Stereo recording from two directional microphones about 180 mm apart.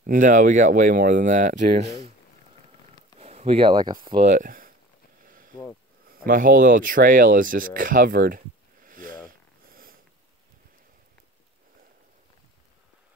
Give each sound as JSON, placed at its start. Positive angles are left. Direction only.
{"t": 0.0, "sound": "speech", "side_deg": -45}
{"t": 3.2, "sound": "speech", "side_deg": -35}
{"t": 4.2, "sound": "speech", "side_deg": -45}
{"t": 5.2, "sound": "a sound", "side_deg": -50}
{"t": 6.0, "sound": "speech", "side_deg": -55}
{"t": 8.8, "sound": "a sound", "side_deg": -50}
{"t": 9.7, "sound": "purr", "side_deg": -50}